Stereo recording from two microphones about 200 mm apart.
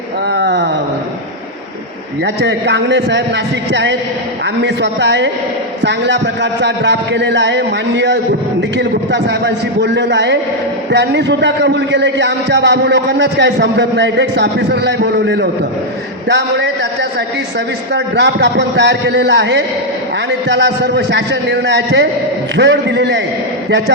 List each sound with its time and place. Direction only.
0.3 s speech: 60° right (ahead or behind)
2.2 s a man's voice: 60° right (ahead or behind)